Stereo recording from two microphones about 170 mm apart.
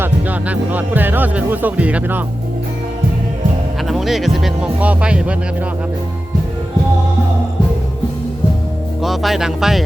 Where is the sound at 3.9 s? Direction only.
Centre (ahead or behind).